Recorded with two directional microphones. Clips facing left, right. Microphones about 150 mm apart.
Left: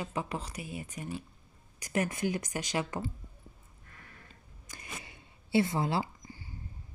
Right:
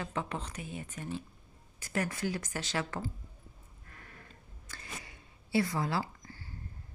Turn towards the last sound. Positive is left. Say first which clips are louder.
# left 1 dB
turn(degrees=15)  # may be behind; listen again after turning